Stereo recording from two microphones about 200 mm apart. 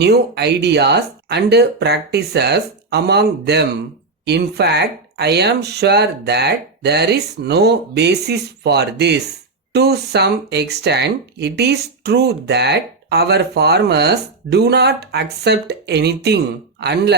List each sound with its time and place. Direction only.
0.0 s speech: 55° right (ahead or behind)